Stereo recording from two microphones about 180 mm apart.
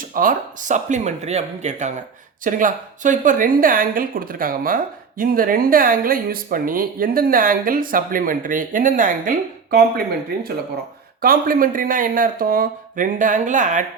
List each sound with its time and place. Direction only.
0.1 s a woman's voice: 50° right (ahead or behind)
11.2 s a woman's voice: 50° right (ahead or behind)